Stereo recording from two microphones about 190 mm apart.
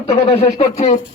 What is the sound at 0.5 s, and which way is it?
Speech, 35° left (ahead or behind).